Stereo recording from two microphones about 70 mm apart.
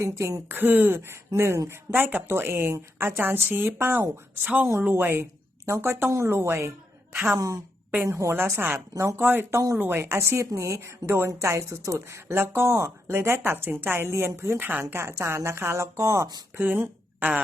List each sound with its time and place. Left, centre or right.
0.0 s speech: right
0.4 s a woman's voice: right
0.9 s speech: right
1.9 s a woman's voice: right
7.1 s a woman's voice: right
7.3 s speech: right
10.8 s speech: right
11.3 s speech: right
14.7 s a woman's voice: right
15.0 s speech: right
16.6 s a woman's voice: right